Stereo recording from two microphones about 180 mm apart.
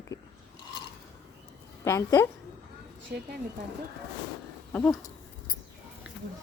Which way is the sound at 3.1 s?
60° right (ahead or behind).